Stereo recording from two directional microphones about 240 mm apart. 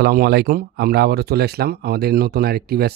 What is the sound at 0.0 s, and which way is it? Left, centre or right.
A man's voice, right.